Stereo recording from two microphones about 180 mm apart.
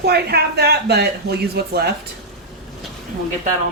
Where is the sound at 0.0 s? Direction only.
60° right (ahead or behind).